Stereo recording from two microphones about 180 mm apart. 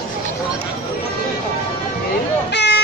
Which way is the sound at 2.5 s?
75° left (ahead or behind).